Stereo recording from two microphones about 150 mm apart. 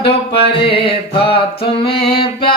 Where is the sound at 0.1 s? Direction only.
40° left (ahead or behind).